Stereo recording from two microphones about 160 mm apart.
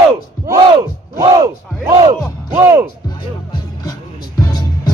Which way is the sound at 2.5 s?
15° right (ahead or behind).